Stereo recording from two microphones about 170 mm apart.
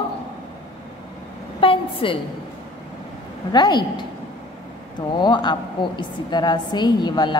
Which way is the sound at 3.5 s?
25° left (ahead or behind).